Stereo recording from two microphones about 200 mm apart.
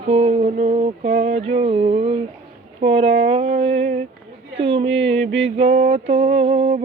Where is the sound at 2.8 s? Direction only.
30° right (ahead or behind).